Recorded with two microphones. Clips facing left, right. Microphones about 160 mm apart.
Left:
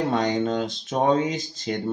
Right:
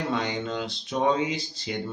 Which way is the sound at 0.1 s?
45° left (ahead or behind).